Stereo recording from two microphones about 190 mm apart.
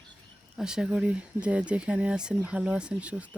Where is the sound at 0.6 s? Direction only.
5° right (ahead or behind).